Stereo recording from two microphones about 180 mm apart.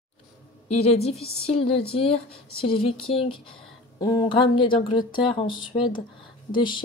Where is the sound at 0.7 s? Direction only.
35° left (ahead or behind).